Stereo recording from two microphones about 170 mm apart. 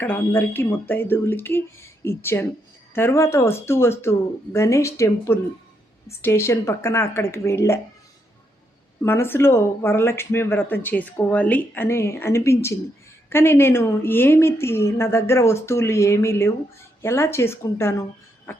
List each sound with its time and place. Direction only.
0.0 s speech: 10° left (ahead or behind)
9.0 s speech: 15° left (ahead or behind)
18.5 s a sound: 10° left (ahead or behind)